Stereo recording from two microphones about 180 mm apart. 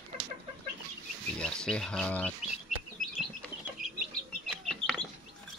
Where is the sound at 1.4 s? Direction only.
5° left (ahead or behind).